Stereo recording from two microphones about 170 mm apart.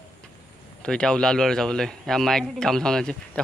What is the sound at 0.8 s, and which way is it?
Speech, 5° left (ahead or behind).